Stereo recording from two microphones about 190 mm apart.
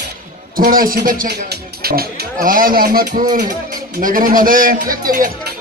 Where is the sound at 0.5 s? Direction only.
50° right (ahead or behind).